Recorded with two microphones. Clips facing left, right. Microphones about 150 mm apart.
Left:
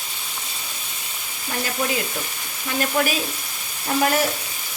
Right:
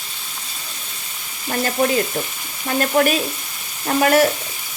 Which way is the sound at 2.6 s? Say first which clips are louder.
Right 5 dB; 50° right (ahead or behind).